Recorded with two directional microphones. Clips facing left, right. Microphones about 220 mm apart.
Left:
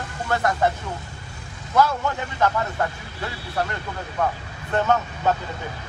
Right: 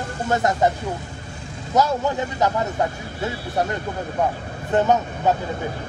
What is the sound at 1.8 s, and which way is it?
Speech, 20° right (ahead or behind).